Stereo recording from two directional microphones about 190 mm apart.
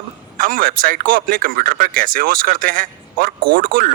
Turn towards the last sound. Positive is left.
turn(degrees=-45)  # may be behind; listen again after turning